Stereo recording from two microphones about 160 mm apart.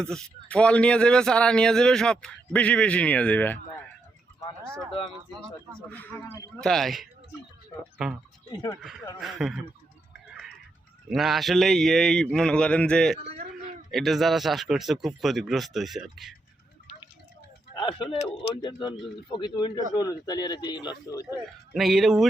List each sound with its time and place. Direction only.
0.0 s a man's voice: 5° left (ahead or behind)
5.9 s a man's voice: 10° left (ahead or behind)
6.7 s speech: centre (ahead or behind)
8.4 s speech: 25° left (ahead or behind)
9.2 s speech: centre (ahead or behind)
11.1 s speech: centre (ahead or behind)
17.7 s speech: 35° left (ahead or behind)
21.8 s speech: centre (ahead or behind)